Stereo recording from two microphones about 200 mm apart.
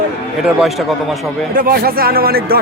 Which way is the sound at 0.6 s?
Centre (ahead or behind).